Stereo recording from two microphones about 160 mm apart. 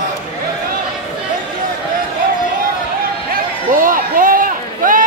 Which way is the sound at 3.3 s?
60° right (ahead or behind).